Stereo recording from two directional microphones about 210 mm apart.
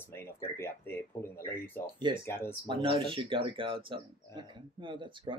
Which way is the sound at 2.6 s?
25° right (ahead or behind).